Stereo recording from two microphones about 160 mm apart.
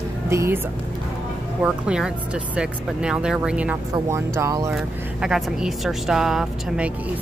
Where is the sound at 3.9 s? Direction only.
20° right (ahead or behind).